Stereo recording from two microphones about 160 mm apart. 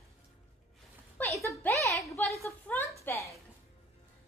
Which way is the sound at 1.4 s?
15° left (ahead or behind).